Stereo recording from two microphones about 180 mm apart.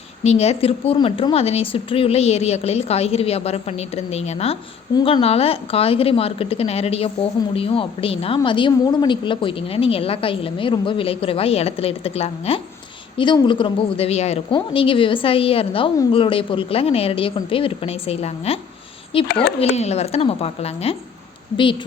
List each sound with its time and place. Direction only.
0.2 s a woman's voice: 35° left (ahead or behind)
19.3 s speech: 65° left (ahead or behind)
19.5 s a woman's voice: 40° left (ahead or behind)